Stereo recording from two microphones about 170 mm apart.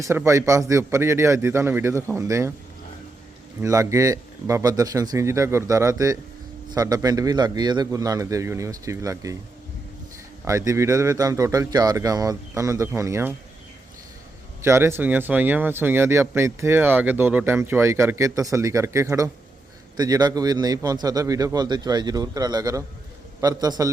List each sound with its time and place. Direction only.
0.0 s speech: 15° right (ahead or behind)
3.6 s speech: 20° right (ahead or behind)
10.4 s speech: 20° right (ahead or behind)
14.6 s speech: 15° right (ahead or behind)